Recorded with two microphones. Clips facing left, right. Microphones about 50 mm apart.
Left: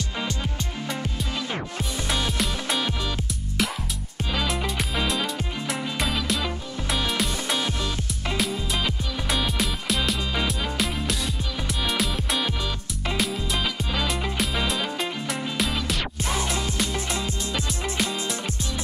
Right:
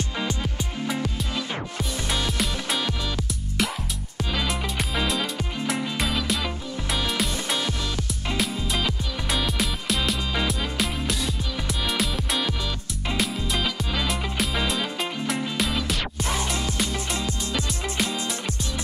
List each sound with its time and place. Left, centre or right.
2.0 s music: centre
4.3 s music: centre
17.9 s music: centre